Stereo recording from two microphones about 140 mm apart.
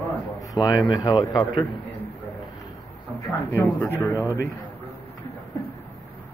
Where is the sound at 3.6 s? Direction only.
15° left (ahead or behind).